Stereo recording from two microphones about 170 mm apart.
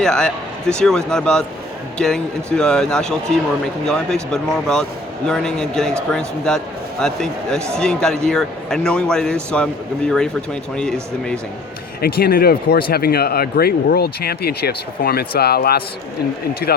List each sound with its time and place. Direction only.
0.0 s speech: 5° left (ahead or behind)
12.0 s speech: 65° left (ahead or behind)